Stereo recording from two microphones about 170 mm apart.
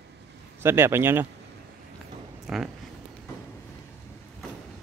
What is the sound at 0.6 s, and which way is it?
Speech, 15° right (ahead or behind).